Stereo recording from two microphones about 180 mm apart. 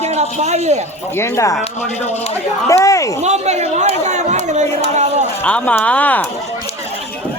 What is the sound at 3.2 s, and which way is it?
Speech, 40° right (ahead or behind).